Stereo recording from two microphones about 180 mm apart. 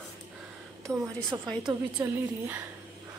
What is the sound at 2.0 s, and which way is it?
Speech, 15° right (ahead or behind).